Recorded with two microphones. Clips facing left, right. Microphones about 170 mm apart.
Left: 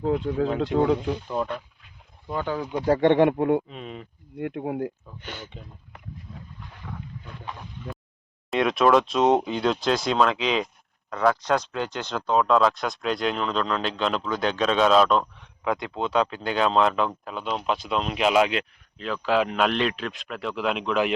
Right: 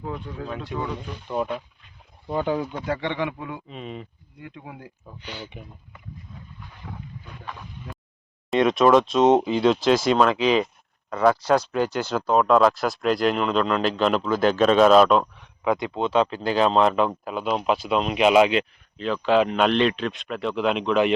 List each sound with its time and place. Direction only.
0.0 s speech: 75° left (ahead or behind)
1.3 s speech: 5° right (ahead or behind)
2.2 s speech: 15° right (ahead or behind)
2.8 s speech: 40° left (ahead or behind)
3.1 s speech: 55° left (ahead or behind)
3.7 s speech: centre (ahead or behind)
4.4 s speech: 60° left (ahead or behind)
6.9 s boat: 5° right (ahead or behind)
8.4 s speech: centre (ahead or behind)